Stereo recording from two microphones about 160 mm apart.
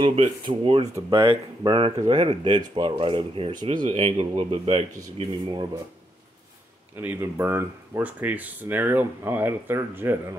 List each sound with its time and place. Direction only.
0.0 s speech: 35° right (ahead or behind)
7.0 s speech: 15° right (ahead or behind)